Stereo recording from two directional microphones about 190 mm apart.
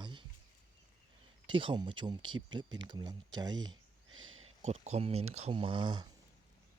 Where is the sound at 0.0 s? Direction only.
25° right (ahead or behind).